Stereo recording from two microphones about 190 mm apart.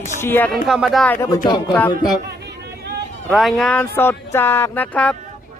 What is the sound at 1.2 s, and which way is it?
Speech, 20° left (ahead or behind).